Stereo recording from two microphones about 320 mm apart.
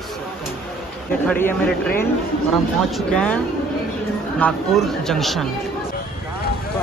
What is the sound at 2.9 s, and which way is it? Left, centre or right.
Speech, centre.